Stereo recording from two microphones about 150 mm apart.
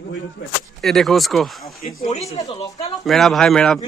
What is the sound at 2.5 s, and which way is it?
Speech, 40° left (ahead or behind).